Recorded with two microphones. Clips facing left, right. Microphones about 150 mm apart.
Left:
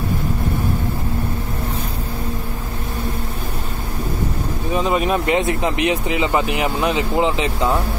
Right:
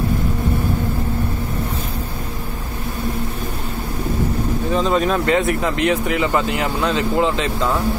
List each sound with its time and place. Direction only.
4.7 s speech: 15° left (ahead or behind)